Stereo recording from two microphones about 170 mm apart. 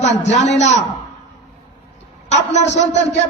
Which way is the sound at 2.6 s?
90° left.